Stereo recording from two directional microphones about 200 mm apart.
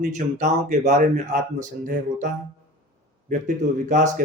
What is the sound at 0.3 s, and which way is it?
Speech, 35° right (ahead or behind).